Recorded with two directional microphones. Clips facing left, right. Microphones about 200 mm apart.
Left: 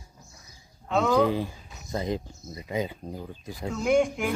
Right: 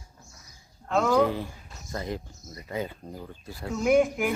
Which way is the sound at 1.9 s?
20° left (ahead or behind).